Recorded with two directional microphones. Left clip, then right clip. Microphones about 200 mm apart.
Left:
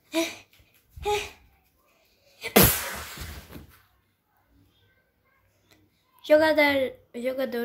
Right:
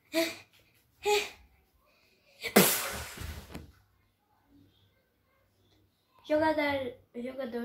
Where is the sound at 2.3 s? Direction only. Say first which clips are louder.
Left 4 dB; 5° left (ahead or behind).